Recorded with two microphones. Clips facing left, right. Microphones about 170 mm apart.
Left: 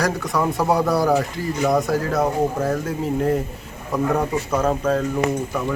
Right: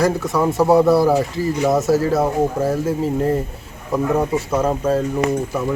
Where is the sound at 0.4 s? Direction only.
5° right (ahead or behind).